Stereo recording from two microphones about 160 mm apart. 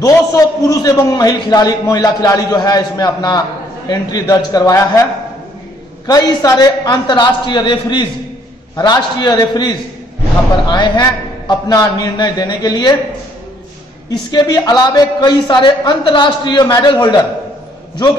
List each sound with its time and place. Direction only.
0.0 s a man's voice: 20° left (ahead or behind)
6.0 s a man's voice: 25° left (ahead or behind)
14.0 s a man's voice: 25° left (ahead or behind)